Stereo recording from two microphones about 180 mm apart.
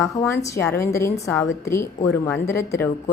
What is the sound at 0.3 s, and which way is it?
A woman's voice, 15° left (ahead or behind).